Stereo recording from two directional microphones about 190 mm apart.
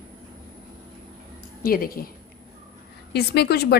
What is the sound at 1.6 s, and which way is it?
Speech, 50° left (ahead or behind).